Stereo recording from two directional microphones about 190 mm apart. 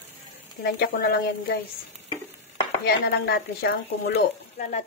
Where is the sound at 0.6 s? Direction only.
50° left (ahead or behind).